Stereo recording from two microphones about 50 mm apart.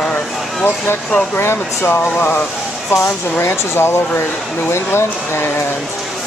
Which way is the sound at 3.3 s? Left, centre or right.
Left.